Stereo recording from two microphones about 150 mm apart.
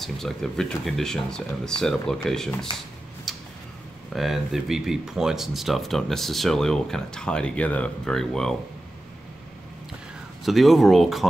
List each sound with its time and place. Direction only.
0.0 s speech: centre (ahead or behind)
3.3 s tick-tock: centre (ahead or behind)
4.1 s speech: centre (ahead or behind)
10.4 s speech: centre (ahead or behind)